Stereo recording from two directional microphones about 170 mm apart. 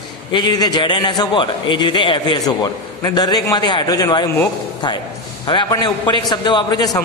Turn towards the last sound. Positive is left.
turn(degrees=25)  # may be behind; listen again after turning